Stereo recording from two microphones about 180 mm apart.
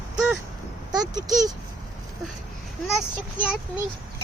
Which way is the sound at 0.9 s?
20° right (ahead or behind).